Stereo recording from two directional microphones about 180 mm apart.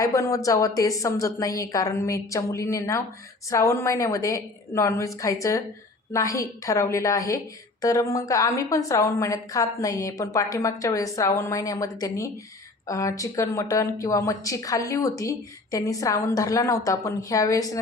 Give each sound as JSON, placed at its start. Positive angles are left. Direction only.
{"t": 0.0, "sound": "speech", "side_deg": 15}